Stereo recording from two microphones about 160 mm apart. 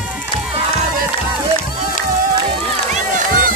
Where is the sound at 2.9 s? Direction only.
60° right (ahead or behind).